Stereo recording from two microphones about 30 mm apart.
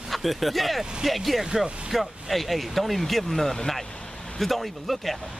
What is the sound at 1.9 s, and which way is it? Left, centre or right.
Speech, centre.